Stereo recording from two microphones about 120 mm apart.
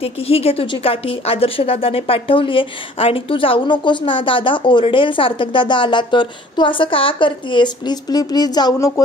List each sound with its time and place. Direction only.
0.0 s a woman's voice: 55° left (ahead or behind); by 9.0 s 25° left (ahead or behind)